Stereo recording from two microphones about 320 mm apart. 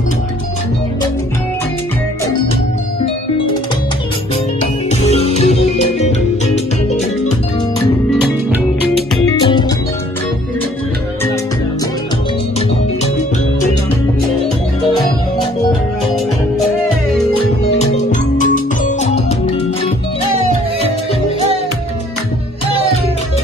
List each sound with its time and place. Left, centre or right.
4.6 s music: centre
8.1 s music: centre
9.5 s music: centre
17.3 s music: centre